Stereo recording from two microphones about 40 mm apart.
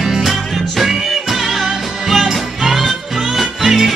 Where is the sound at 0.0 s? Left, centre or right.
Centre.